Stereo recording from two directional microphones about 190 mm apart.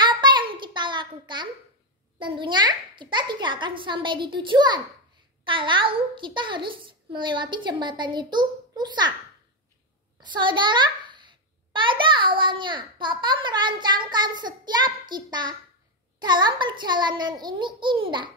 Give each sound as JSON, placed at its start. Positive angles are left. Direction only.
{"t": 0.0, "sound": "a sound", "side_deg": -25}
{"t": 2.1, "sound": "a child's voice", "side_deg": -25}
{"t": 10.3, "sound": "a child's voice", "side_deg": -25}